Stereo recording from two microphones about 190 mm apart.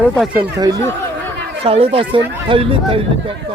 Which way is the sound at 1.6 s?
30° right (ahead or behind).